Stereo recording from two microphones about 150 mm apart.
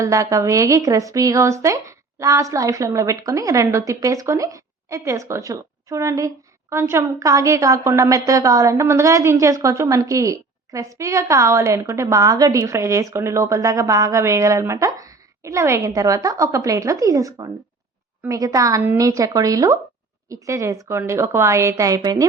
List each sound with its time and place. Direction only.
0.0 s a woman's voice: 20° right (ahead or behind)